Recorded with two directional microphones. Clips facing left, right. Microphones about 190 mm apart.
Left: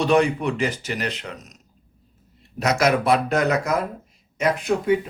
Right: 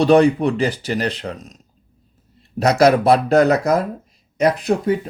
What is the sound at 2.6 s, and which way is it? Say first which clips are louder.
Speech: right 6 dB; 35° right (ahead or behind).